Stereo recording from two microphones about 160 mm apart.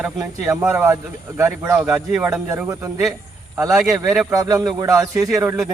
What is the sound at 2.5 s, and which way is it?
Speech, 15° right (ahead or behind).